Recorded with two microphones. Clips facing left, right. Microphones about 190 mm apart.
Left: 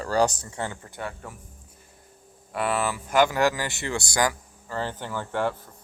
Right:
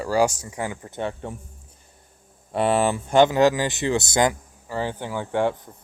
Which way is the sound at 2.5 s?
30° right (ahead or behind).